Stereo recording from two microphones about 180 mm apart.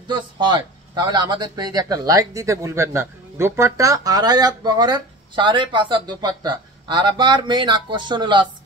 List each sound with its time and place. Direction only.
0.1 s speech: 25° right (ahead or behind)